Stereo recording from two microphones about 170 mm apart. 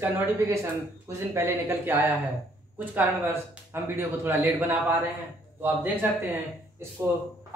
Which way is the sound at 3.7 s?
15° right (ahead or behind).